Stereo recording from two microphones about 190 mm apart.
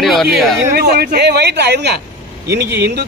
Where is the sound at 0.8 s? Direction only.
55° right (ahead or behind).